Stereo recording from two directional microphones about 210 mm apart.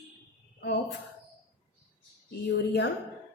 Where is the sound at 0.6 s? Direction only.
50° left (ahead or behind).